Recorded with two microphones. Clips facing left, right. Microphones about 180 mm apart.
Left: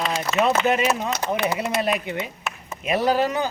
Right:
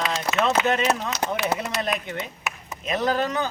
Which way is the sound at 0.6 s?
10° left (ahead or behind).